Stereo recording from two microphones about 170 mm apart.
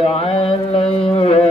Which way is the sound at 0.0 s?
35° left (ahead or behind).